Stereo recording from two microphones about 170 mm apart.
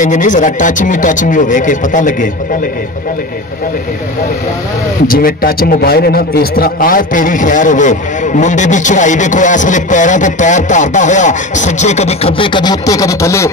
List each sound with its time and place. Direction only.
0.0 s a man's voice: 45° left (ahead or behind)
5.0 s a man's voice: 60° left (ahead or behind); by 13.5 s 15° left (ahead or behind)